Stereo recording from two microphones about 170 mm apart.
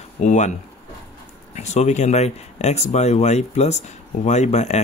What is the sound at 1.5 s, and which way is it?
Speech, 40° left (ahead or behind).